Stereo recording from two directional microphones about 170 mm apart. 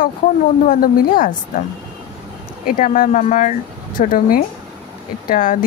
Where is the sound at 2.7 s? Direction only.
55° left (ahead or behind).